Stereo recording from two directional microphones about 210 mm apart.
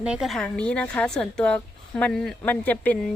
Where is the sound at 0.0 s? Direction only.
5° right (ahead or behind).